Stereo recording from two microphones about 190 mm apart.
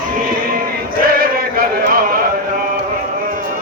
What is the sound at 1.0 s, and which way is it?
Chant, 50° right (ahead or behind).